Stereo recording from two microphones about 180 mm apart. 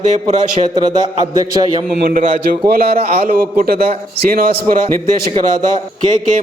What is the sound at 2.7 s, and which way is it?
A man's voice, 55° right (ahead or behind).